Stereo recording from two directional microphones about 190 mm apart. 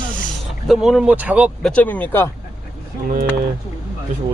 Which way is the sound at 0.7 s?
Centre (ahead or behind).